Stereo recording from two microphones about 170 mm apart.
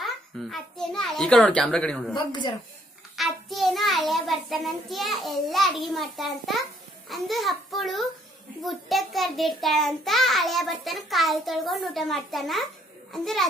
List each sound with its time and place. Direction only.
0.0 s a child's voice: centre (ahead or behind)
2.1 s speech: 25° left (ahead or behind)
3.2 s a child's voice: centre (ahead or behind)